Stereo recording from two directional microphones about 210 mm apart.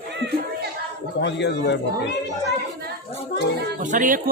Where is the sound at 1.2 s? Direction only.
55° left (ahead or behind).